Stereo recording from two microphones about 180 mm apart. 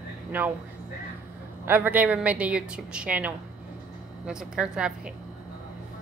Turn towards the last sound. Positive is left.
turn(degrees=-5)  # may be behind; listen again after turning